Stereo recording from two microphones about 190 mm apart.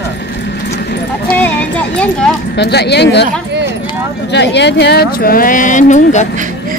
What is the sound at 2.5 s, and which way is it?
Speech, 60° left (ahead or behind).